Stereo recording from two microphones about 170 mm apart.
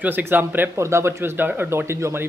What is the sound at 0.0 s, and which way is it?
Speech, 10° right (ahead or behind).